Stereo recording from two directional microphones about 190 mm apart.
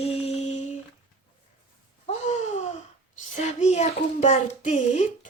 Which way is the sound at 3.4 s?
35° left (ahead or behind).